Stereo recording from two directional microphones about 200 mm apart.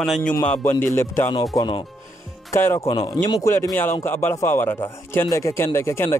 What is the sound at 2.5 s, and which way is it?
Speech, 10° left (ahead or behind).